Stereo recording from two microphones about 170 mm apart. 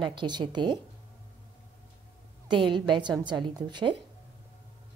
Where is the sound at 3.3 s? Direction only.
25° right (ahead or behind).